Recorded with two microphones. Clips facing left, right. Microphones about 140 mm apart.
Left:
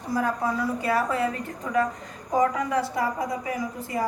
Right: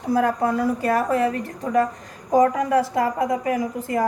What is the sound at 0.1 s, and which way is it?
A woman's voice, 60° right (ahead or behind).